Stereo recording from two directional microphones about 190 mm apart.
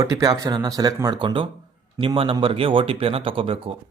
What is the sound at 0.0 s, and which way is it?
Speech, 15° right (ahead or behind).